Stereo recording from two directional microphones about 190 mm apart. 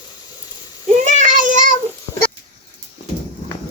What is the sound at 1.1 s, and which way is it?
Child singing, 40° right (ahead or behind).